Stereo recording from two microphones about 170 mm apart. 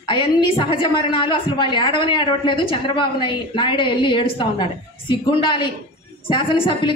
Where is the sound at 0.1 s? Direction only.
30° left (ahead or behind).